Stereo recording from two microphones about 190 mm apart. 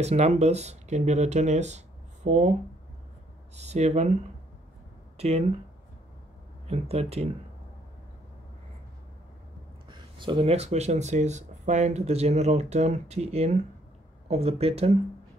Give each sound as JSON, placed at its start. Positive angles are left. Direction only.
{"t": 0.0, "sound": "speech", "side_deg": -35}
{"t": 3.5, "sound": "speech", "side_deg": -35}
{"t": 5.1, "sound": "a sound", "side_deg": -35}
{"t": 6.7, "sound": "speech", "side_deg": -30}
{"t": 9.8, "sound": "speech", "side_deg": -25}